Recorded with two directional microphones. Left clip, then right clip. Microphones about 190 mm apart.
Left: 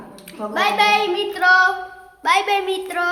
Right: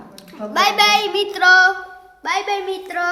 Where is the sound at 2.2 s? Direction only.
Centre (ahead or behind).